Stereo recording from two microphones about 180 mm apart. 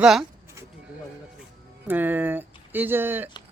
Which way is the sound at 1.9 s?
10° right (ahead or behind).